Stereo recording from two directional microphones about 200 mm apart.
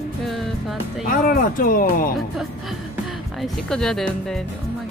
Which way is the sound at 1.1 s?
45° left (ahead or behind).